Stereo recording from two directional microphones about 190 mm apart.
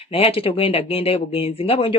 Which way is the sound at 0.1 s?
30° left (ahead or behind).